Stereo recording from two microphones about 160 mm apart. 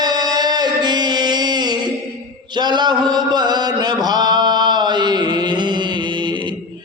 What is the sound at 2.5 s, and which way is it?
Mantra, 25° right (ahead or behind).